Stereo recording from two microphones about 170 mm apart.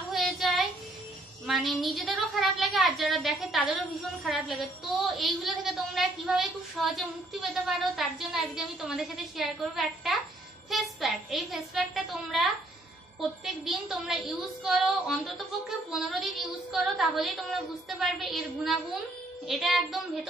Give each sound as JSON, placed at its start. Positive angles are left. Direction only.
{"t": 0.1, "sound": "child singing", "side_deg": 0}
{"t": 1.5, "sound": "a woman's voice", "side_deg": 0}
{"t": 13.7, "sound": "a woman's voice", "side_deg": 0}